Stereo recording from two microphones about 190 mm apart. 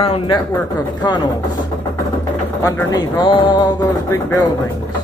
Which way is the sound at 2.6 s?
20° left (ahead or behind).